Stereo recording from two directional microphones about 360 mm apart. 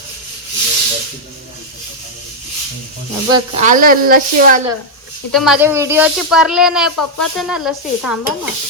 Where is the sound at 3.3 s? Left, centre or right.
Centre.